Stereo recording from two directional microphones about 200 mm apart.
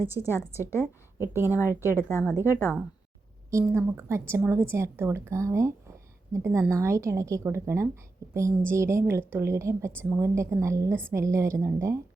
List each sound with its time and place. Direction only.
0.2 s speech: 15° left (ahead or behind)
3.5 s a woman's voice: 15° right (ahead or behind)